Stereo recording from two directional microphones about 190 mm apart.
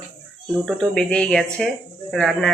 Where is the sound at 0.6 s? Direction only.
5° left (ahead or behind).